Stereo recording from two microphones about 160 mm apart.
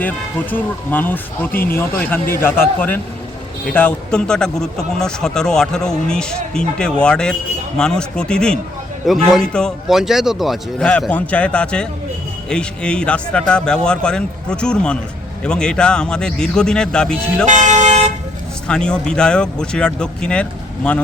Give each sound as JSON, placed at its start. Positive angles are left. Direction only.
{"t": 0.5, "sound": "speech", "side_deg": 10}
{"t": 17.4, "sound": "vehicle", "side_deg": -50}
{"t": 18.7, "sound": "speech", "side_deg": 5}